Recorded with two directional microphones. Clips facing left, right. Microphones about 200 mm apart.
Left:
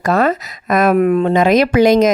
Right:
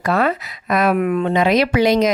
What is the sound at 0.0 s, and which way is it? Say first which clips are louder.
Speech: left 3 dB; 40° left (ahead or behind).